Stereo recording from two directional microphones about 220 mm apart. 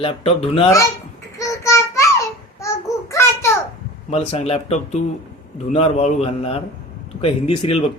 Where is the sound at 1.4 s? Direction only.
15° left (ahead or behind).